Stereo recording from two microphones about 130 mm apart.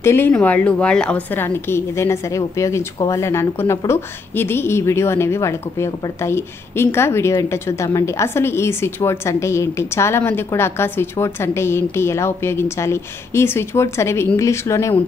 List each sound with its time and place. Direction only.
0.0 s a woman's voice: 15° left (ahead or behind)